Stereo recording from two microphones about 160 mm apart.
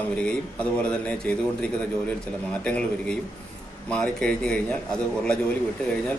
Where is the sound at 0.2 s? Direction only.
5° left (ahead or behind).